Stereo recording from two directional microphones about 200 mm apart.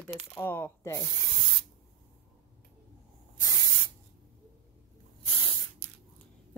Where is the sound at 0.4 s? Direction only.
10° left (ahead or behind).